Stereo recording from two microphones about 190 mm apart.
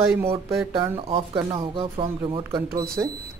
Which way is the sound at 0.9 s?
25° right (ahead or behind).